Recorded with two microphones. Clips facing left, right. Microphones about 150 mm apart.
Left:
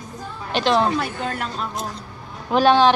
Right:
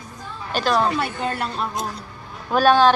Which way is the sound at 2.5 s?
20° left (ahead or behind).